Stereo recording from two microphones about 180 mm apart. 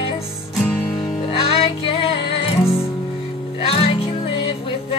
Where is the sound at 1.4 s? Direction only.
30° left (ahead or behind).